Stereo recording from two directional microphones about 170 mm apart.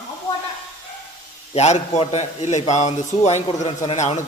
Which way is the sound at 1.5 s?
40° left (ahead or behind).